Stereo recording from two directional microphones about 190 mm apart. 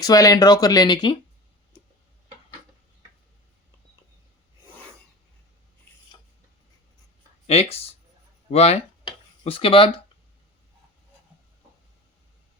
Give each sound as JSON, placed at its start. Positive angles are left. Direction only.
{"t": 0.0, "sound": "speech", "side_deg": 20}
{"t": 7.4, "sound": "speech", "side_deg": 30}
{"t": 8.4, "sound": "a sound", "side_deg": 35}